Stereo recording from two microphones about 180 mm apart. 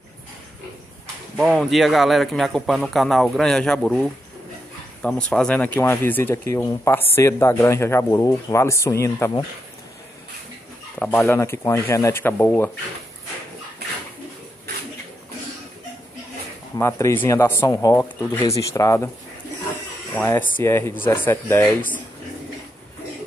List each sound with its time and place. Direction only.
1.3 s a man's voice: centre (ahead or behind); by 9.4 s 15° left (ahead or behind)
11.0 s speech: 15° left (ahead or behind)
16.7 s speech: 15° left (ahead or behind)
20.2 s speech: 10° left (ahead or behind)